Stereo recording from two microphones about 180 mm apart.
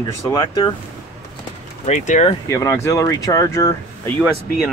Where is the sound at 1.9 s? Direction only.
40° left (ahead or behind).